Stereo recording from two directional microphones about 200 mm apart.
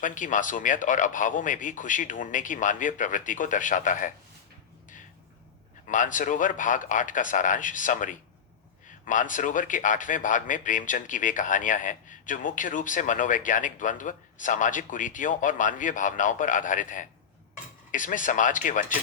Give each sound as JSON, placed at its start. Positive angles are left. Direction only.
{"t": 0.0, "sound": "a man's voice", "side_deg": 40}
{"t": 5.9, "sound": "a man's voice", "side_deg": 40}